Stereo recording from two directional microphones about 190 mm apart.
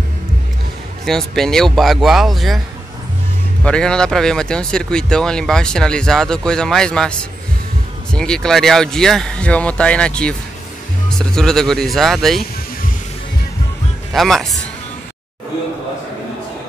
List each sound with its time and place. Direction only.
1.0 s speech: centre (ahead or behind)
3.6 s speech: 5° left (ahead or behind)
14.1 s speech: centre (ahead or behind)